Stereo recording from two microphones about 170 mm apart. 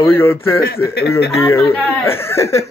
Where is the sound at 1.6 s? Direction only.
35° left (ahead or behind).